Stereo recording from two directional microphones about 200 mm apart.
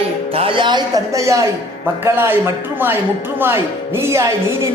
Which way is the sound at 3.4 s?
10° right (ahead or behind).